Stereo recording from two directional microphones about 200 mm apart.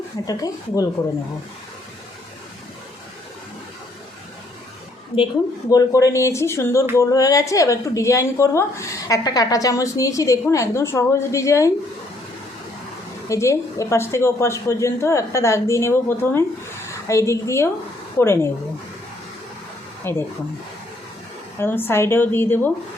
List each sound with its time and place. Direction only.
0.3 s a woman's voice: 20° left (ahead or behind)
5.1 s a woman's voice: 20° left (ahead or behind)
13.2 s a woman's voice: 15° left (ahead or behind)
20.1 s a woman's voice: 10° left (ahead or behind)
21.6 s a woman's voice: 10° left (ahead or behind)